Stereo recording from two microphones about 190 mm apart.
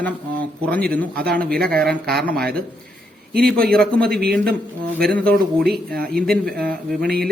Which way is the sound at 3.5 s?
50° right (ahead or behind).